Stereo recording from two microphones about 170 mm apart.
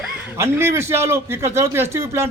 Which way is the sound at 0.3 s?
15° right (ahead or behind).